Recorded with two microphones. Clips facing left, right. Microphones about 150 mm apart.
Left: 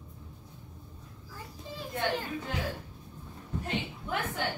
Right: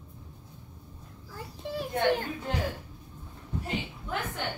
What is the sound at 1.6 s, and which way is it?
Children playing, 70° right (ahead or behind).